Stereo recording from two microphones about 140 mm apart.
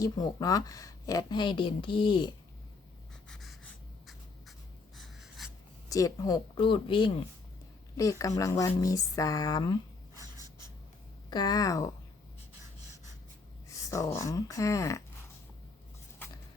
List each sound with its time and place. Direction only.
0.0 s speech: 25° left (ahead or behind)
3.2 s writing: centre (ahead or behind)
5.9 s speech: 25° left (ahead or behind)
8.4 s speech: 25° left (ahead or behind)
11.3 s speech: 30° left (ahead or behind)
13.7 s speech: 25° left (ahead or behind)
16.2 s a sound: 15° left (ahead or behind)